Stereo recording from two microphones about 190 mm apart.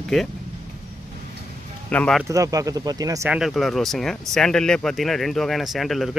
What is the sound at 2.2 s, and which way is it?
Speech, 20° right (ahead or behind).